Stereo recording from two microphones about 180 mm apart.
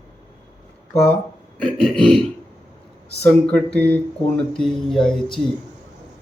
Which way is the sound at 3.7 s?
10° left (ahead or behind).